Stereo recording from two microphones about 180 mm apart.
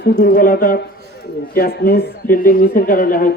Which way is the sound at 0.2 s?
50° left (ahead or behind).